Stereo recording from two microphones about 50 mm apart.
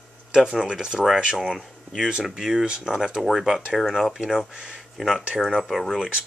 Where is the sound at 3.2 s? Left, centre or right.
Centre.